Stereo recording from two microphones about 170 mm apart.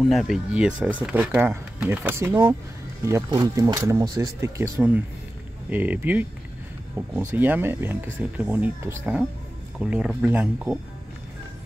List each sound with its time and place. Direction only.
0.1 s speech: centre (ahead or behind)